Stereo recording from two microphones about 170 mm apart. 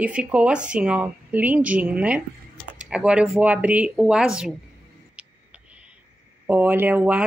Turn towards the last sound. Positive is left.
turn(degrees=-10)  # may be behind; listen again after turning